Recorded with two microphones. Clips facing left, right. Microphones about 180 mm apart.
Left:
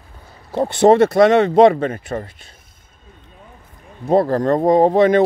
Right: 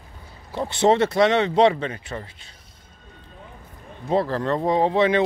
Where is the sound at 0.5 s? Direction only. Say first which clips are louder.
Left 7 dB; 50° left (ahead or behind).